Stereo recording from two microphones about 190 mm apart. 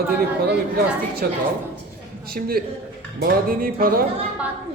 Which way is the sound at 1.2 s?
55° right (ahead or behind).